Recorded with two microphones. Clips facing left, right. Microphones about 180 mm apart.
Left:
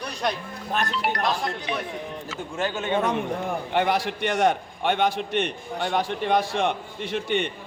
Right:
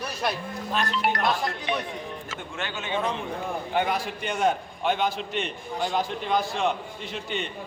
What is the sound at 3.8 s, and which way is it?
A man's voice, 75° left (ahead or behind).